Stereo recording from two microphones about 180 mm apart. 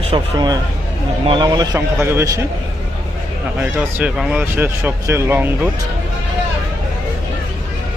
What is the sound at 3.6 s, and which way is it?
Speech, 5° right (ahead or behind).